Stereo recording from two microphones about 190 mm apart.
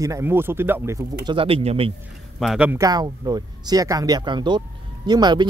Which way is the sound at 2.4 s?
5° right (ahead or behind).